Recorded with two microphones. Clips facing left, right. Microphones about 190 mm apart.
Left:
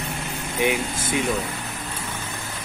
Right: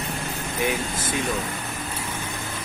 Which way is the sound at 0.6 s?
15° left (ahead or behind).